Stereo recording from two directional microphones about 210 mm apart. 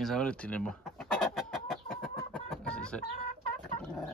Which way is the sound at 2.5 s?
5° left (ahead or behind).